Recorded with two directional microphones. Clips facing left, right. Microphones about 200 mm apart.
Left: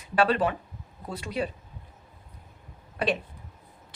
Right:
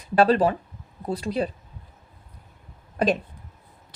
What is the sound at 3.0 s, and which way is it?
Speech, 40° right (ahead or behind).